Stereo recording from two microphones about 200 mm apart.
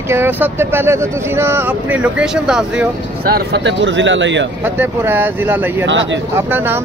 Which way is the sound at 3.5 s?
65° right (ahead or behind).